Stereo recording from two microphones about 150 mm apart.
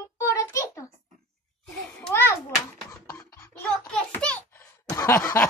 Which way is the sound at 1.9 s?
10° left (ahead or behind).